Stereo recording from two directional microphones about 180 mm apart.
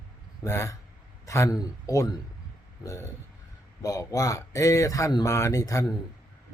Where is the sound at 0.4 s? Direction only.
15° left (ahead or behind).